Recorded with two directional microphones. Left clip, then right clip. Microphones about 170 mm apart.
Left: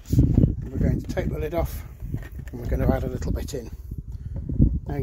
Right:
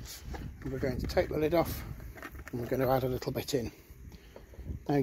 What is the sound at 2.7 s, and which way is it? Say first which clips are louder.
Speech: left 2 dB; 25° right (ahead or behind).